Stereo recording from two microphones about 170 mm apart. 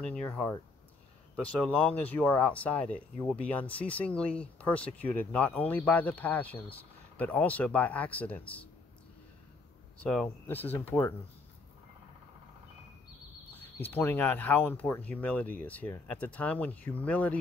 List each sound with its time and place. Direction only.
0.0 s speech: 5° left (ahead or behind)
9.9 s speech: 5° left (ahead or behind)
13.5 s speech: 10° left (ahead or behind)